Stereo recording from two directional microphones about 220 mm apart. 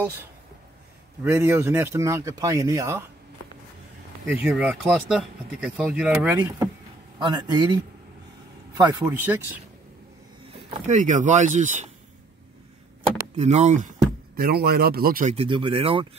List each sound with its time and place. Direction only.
1.2 s speech: 10° right (ahead or behind)
4.3 s speech: 5° right (ahead or behind)
7.2 s speech: 20° right (ahead or behind)
10.9 s speech: 35° right (ahead or behind)
13.4 s speech: 30° right (ahead or behind)
15.3 s speech: 25° right (ahead or behind)